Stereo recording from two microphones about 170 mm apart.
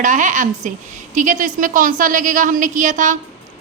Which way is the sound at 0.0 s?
45° right (ahead or behind).